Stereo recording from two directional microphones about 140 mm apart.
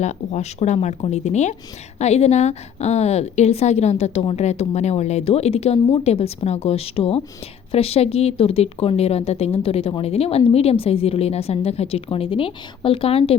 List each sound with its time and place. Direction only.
0.0 s a woman's voice: 55° left (ahead or behind)